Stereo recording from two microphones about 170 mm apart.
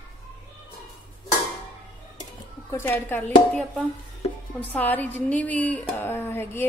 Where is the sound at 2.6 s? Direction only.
15° left (ahead or behind).